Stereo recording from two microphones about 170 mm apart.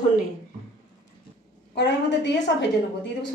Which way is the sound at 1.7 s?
90° left.